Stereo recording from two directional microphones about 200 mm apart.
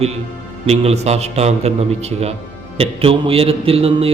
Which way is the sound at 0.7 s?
30° right (ahead or behind).